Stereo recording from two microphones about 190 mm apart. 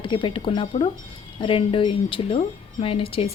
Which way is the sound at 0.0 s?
25° left (ahead or behind).